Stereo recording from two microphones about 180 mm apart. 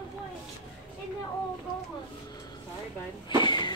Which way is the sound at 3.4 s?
25° left (ahead or behind).